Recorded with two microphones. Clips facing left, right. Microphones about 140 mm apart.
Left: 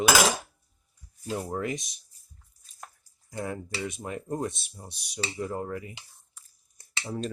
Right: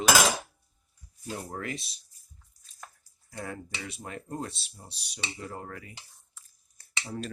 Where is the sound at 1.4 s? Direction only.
20° left (ahead or behind).